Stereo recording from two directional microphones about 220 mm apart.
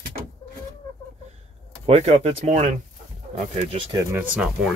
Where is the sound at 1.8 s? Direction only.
25° right (ahead or behind).